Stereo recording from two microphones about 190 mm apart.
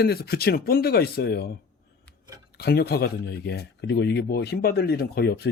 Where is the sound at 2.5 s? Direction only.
55° left (ahead or behind).